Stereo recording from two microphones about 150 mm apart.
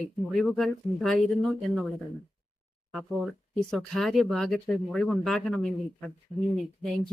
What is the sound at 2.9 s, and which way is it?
Speech, centre (ahead or behind).